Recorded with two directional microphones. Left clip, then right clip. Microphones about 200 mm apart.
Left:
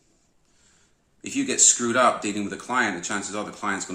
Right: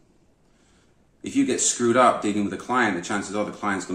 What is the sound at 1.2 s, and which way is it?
Speech, 20° left (ahead or behind).